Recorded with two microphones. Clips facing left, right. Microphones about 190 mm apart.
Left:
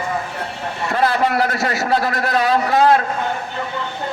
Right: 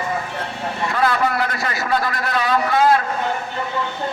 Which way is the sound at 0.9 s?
40° left (ahead or behind).